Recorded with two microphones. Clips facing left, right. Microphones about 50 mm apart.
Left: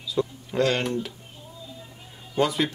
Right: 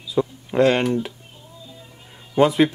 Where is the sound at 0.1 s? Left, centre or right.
Right.